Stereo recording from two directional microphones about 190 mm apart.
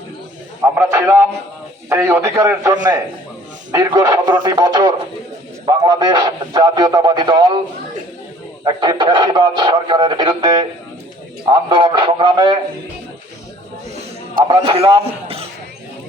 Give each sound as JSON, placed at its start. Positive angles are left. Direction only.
{"t": 0.6, "sound": "a man's voice", "side_deg": -10}
{"t": 8.6, "sound": "speech", "side_deg": -20}
{"t": 11.7, "sound": "speech", "side_deg": -25}
{"t": 14.4, "sound": "speech", "side_deg": -30}